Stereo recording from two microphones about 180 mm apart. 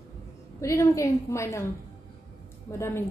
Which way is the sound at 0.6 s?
15° left (ahead or behind).